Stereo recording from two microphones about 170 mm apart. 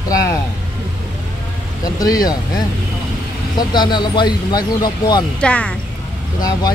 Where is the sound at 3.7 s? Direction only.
25° left (ahead or behind).